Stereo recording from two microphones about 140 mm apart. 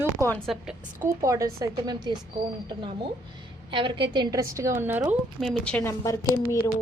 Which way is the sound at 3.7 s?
35° right (ahead or behind).